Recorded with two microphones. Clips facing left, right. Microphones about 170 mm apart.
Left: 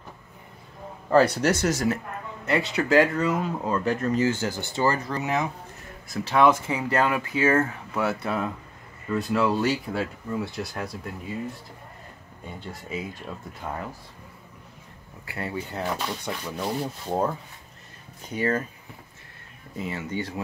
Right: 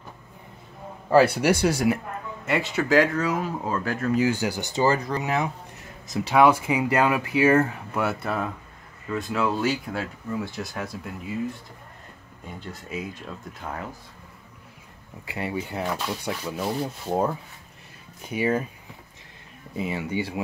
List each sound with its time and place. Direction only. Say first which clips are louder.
1.1 s speech: right 1 dB; 10° right (ahead or behind)
12.4 s speech: even; centre (ahead or behind)
15.2 s speech: right 2 dB; 15° right (ahead or behind)
15.8 s speech: left 2 dB; 5° right (ahead or behind)
19.8 s speech: right 3 dB; 15° right (ahead or behind)